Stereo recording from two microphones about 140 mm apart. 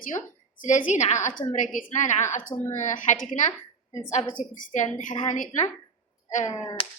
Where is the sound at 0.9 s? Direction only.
55° left (ahead or behind).